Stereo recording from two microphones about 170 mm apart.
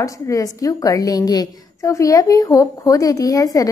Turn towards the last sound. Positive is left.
turn(degrees=20)  # may be behind; listen again after turning